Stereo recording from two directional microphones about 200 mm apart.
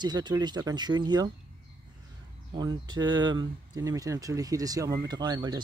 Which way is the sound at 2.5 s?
20° right (ahead or behind).